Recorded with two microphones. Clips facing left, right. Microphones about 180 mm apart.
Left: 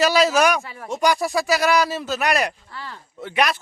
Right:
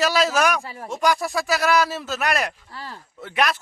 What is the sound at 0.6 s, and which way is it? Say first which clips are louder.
Speech: right 2 dB; 35° right (ahead or behind).